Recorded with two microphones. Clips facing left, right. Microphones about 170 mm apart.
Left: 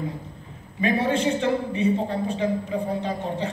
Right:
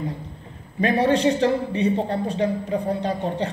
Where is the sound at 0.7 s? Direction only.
40° right (ahead or behind).